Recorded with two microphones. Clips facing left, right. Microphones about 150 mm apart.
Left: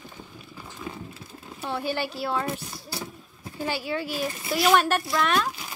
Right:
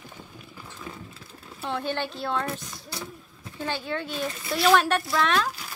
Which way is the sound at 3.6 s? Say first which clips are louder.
Left 2 dB; 10° left (ahead or behind).